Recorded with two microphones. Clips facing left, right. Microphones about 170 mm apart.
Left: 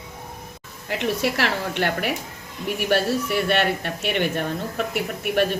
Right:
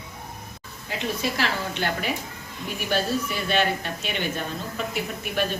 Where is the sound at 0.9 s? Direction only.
70° left (ahead or behind).